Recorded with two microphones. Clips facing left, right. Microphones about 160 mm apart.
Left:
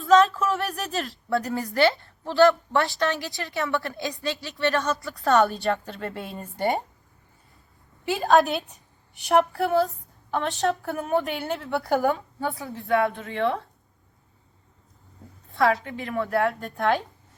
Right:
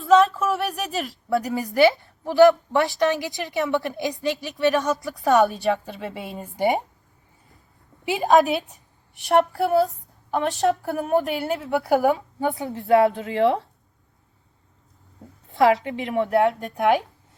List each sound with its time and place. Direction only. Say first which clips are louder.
0.0 s a woman's voice: right 1 dB; centre (ahead or behind)
1.3 s a woman's voice: right 2 dB; 10° right (ahead or behind)
5.4 s a woman's voice: right 2 dB; centre (ahead or behind)
8.4 s a woman's voice: right 3 dB; centre (ahead or behind); by 13.6 s 25° right (ahead or behind)
15.4 s a sound: right 4 dB; 20° right (ahead or behind)
15.9 s a woman's voice: right 5 dB; 20° right (ahead or behind)